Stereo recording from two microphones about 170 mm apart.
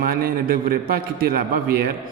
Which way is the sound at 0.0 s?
60° right (ahead or behind).